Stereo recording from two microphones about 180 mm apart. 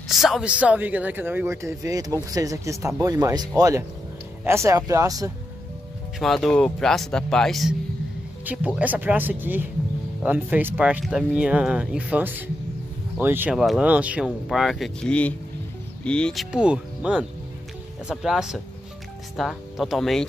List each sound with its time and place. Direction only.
0.1 s speech: centre (ahead or behind); by 5.3 s 20° right (ahead or behind)
6.1 s speech: centre (ahead or behind)
8.5 s speech: 10° right (ahead or behind)